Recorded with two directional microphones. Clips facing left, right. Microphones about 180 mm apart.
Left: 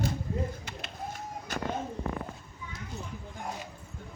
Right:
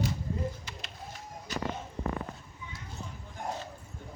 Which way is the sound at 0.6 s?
55° left (ahead or behind).